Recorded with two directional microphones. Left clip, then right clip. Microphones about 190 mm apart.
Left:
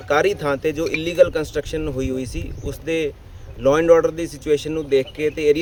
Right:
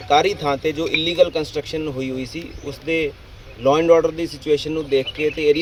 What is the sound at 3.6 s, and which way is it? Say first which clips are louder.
Speech: even; 40° left (ahead or behind).